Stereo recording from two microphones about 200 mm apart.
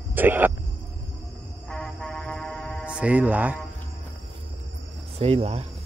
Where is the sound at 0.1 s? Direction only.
10° right (ahead or behind).